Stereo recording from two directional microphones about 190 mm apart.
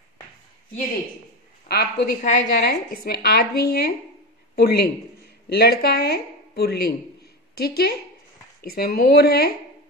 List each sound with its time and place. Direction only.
1.7 s speech: 60° left (ahead or behind)